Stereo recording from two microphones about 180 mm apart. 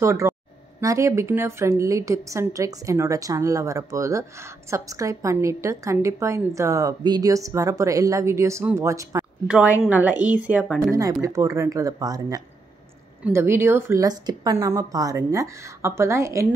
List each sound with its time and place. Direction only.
0.0 s speech: 15° right (ahead or behind)
9.5 s speech: 5° right (ahead or behind)
11.0 s speech: 20° right (ahead or behind)